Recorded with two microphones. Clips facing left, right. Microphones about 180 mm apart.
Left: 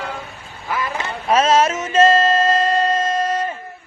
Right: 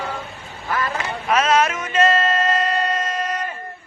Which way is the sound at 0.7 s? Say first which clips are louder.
Even; 10° left (ahead or behind).